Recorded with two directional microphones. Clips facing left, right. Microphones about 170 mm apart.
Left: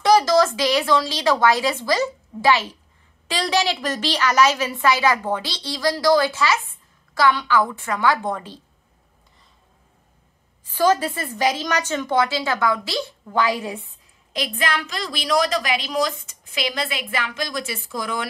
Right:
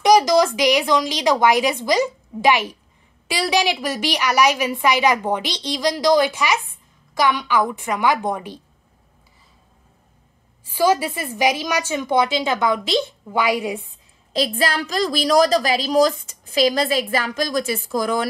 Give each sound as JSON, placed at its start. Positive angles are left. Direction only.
{"t": 0.0, "sound": "a woman's voice", "side_deg": -15}
{"t": 10.7, "sound": "a woman's voice", "side_deg": -10}
{"t": 14.3, "sound": "a woman's voice", "side_deg": -35}